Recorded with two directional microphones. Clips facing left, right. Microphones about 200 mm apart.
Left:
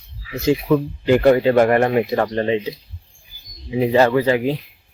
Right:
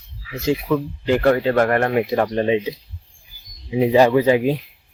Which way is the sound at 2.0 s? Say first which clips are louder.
Even; 5° right (ahead or behind).